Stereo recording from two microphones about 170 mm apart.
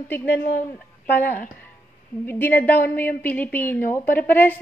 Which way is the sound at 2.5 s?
65° left (ahead or behind).